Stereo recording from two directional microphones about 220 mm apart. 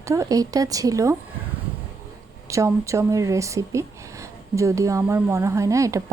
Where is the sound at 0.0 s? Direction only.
15° right (ahead or behind).